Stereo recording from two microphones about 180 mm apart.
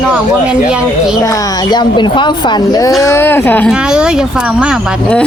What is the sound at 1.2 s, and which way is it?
Speech, 20° left (ahead or behind).